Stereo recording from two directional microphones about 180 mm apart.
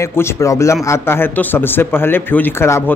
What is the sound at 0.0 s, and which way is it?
A man's voice, 15° left (ahead or behind).